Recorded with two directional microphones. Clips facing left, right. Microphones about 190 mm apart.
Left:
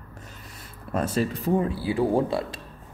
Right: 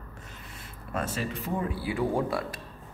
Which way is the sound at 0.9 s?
35° left (ahead or behind).